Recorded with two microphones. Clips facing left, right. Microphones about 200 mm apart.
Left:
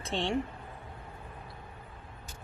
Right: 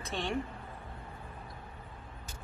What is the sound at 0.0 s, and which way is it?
Speech, 25° left (ahead or behind).